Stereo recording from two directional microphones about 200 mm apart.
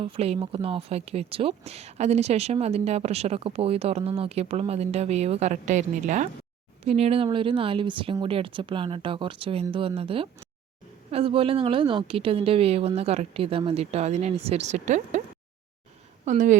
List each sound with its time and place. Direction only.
0.0 s speech: 30° right (ahead or behind)
16.2 s speech: 40° right (ahead or behind)